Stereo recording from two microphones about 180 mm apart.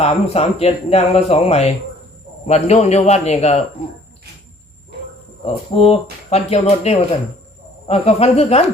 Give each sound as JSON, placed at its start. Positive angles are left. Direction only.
{"t": 0.0, "sound": "speech", "side_deg": 35}
{"t": 5.7, "sound": "speech", "side_deg": 35}